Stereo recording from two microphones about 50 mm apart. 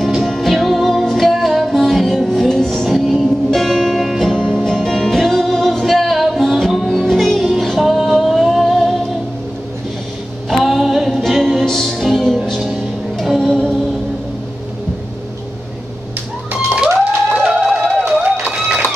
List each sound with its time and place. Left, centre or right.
0.2 s music: centre
4.3 s music: centre
10.5 s a sound: centre
11.1 s music: centre
17.4 s music: centre
18.2 s run: right